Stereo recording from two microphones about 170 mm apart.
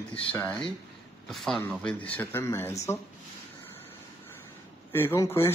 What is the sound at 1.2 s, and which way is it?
Speech, centre (ahead or behind).